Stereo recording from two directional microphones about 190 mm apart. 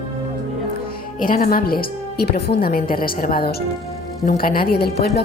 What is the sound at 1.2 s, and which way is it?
A woman's voice, 45° left (ahead or behind).